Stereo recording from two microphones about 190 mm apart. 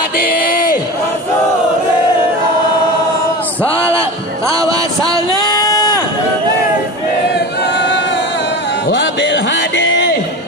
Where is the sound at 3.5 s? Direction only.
15° right (ahead or behind).